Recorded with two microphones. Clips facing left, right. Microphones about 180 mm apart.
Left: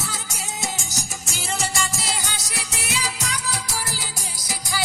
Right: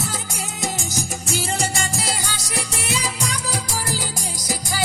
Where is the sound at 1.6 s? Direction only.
50° right (ahead or behind).